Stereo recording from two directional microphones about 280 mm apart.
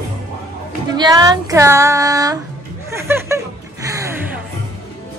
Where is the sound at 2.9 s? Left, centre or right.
Centre.